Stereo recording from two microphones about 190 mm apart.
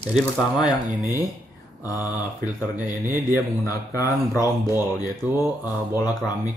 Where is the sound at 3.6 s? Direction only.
15° left (ahead or behind).